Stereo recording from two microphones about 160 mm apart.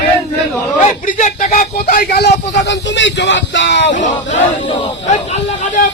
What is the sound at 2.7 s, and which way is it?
Speech, 90° left.